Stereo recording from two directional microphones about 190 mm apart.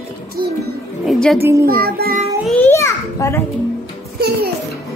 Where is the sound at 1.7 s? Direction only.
50° right (ahead or behind).